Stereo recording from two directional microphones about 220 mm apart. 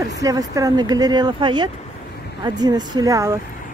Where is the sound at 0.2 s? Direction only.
15° right (ahead or behind).